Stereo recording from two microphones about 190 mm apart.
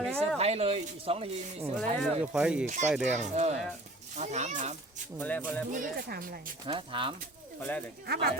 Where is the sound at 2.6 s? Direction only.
40° right (ahead or behind).